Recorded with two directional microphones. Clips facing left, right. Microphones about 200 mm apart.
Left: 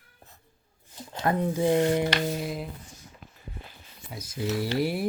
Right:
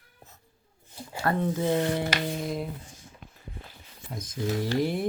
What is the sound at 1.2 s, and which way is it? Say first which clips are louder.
Speech: left 1 dB; 15° left (ahead or behind).